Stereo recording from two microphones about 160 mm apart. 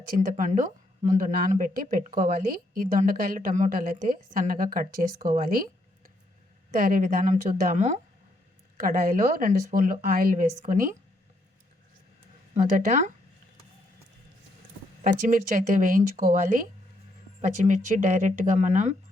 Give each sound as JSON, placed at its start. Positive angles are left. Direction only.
{"t": 0.2, "sound": "a woman's voice", "side_deg": -55}
{"t": 6.7, "sound": "a woman's voice", "side_deg": -60}
{"t": 12.8, "sound": "speech", "side_deg": -50}
{"t": 15.0, "sound": "a woman's voice", "side_deg": -60}